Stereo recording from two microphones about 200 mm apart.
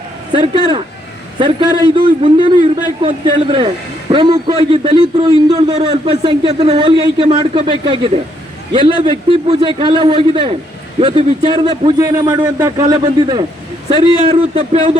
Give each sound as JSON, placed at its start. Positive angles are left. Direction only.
{"t": 0.3, "sound": "speech", "side_deg": -25}